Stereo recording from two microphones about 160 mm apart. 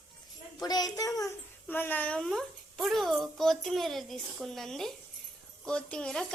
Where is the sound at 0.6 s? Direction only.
25° left (ahead or behind).